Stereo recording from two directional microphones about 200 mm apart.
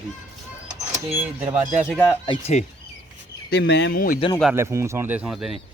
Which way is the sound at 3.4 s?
55° left (ahead or behind).